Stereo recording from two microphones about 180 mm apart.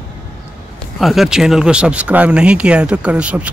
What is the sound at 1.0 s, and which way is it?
Speech, centre (ahead or behind).